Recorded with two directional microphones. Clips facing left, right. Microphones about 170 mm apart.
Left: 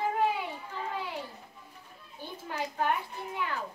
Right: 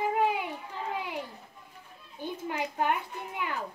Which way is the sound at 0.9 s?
15° right (ahead or behind).